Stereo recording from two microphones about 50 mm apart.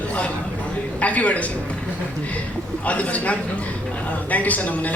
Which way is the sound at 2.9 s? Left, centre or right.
Left.